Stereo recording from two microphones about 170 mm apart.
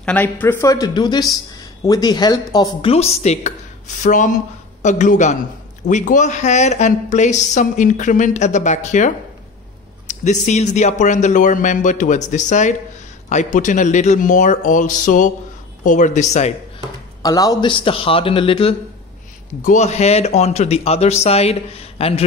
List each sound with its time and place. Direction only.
0.0 s speech: 10° left (ahead or behind)
2.9 s a woman's voice: 35° left (ahead or behind)
17.2 s speech: 20° left (ahead or behind)
19.6 s speech: 45° left (ahead or behind)